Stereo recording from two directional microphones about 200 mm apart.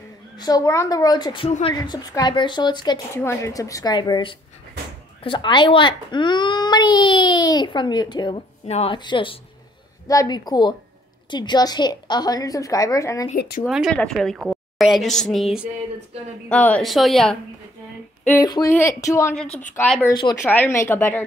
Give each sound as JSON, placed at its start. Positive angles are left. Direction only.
{"t": 0.4, "sound": "a child's voice", "side_deg": 15}
{"t": 13.7, "sound": "a woman's voice", "side_deg": 0}
{"t": 19.3, "sound": "a woman's voice", "side_deg": 0}